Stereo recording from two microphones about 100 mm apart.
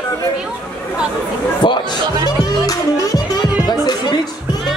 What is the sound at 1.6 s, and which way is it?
Speech, 45° left (ahead or behind).